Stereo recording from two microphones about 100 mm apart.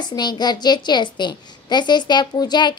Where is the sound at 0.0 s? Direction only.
45° left (ahead or behind).